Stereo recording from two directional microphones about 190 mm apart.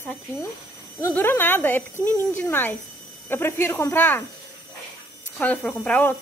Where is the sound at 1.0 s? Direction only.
10° left (ahead or behind).